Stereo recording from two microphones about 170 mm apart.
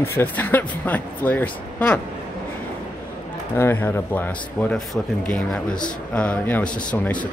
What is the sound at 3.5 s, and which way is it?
Speech, 15° left (ahead or behind).